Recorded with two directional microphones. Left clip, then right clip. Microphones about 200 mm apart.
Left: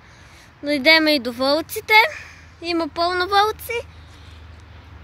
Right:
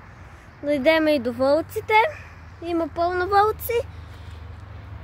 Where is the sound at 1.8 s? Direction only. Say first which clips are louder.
Left 4 dB; 15° left (ahead or behind).